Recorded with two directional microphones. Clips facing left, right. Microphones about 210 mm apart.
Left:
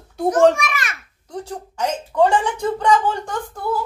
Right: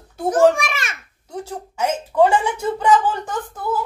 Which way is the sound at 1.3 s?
5° right (ahead or behind).